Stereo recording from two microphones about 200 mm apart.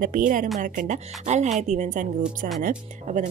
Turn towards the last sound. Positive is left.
turn(degrees=-45)  # may be behind; listen again after turning